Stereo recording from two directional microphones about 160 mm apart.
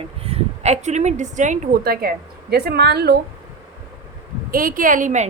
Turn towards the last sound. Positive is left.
turn(degrees=-50)  # may be behind; listen again after turning